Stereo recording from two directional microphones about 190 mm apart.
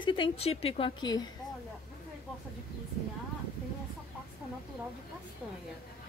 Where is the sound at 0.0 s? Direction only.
25° left (ahead or behind).